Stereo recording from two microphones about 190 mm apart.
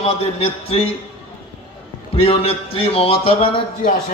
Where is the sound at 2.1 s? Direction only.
30° left (ahead or behind).